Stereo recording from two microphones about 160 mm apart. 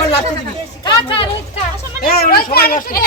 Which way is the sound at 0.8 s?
30° left (ahead or behind).